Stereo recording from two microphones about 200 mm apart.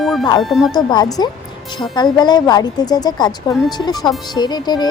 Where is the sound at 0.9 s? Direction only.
20° left (ahead or behind).